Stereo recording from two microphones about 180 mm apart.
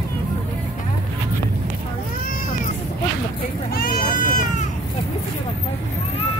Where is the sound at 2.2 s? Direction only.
50° left (ahead or behind).